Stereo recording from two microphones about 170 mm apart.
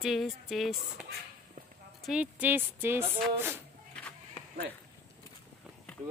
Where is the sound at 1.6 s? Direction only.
55° right (ahead or behind).